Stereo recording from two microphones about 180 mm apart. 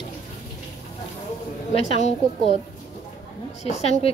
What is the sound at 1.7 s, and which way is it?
Speech, 35° left (ahead or behind).